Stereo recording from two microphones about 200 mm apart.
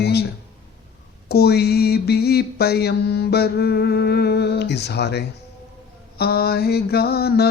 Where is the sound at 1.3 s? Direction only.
50° left (ahead or behind).